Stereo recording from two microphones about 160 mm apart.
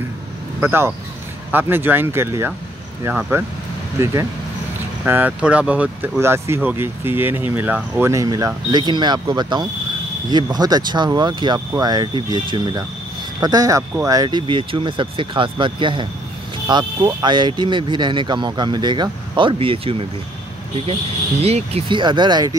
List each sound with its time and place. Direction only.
0.6 s speech: 15° right (ahead or behind); by 20.1 s 35° right (ahead or behind)
21.4 s speech: 40° right (ahead or behind)